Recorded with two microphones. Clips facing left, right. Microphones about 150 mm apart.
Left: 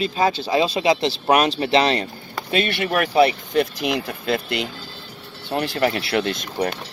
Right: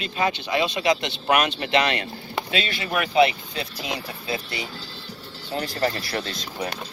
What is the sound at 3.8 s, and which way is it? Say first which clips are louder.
Speech: left 7 dB; 60° left (ahead or behind).